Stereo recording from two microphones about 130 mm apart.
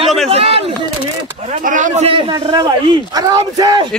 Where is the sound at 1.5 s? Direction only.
75° right (ahead or behind).